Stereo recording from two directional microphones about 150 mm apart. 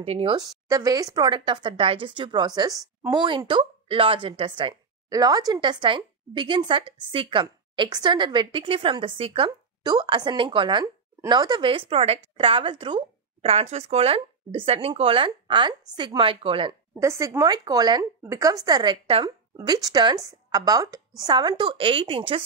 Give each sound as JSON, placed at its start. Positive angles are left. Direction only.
{"t": 0.0, "sound": "speech", "side_deg": -40}
{"t": 0.4, "sound": "speech", "side_deg": -25}
{"t": 17.0, "sound": "speech", "side_deg": -20}